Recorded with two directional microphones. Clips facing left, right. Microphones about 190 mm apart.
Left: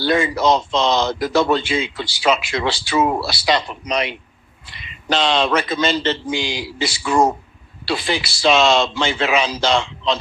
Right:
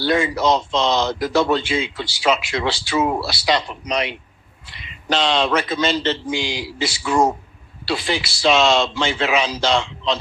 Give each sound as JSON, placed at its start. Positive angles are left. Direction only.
{"t": 0.0, "sound": "speech", "side_deg": 55}
{"t": 5.1, "sound": "speech", "side_deg": 55}